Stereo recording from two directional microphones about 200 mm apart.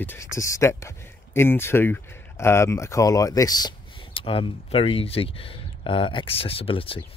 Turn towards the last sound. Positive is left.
turn(degrees=25)  # may be behind; listen again after turning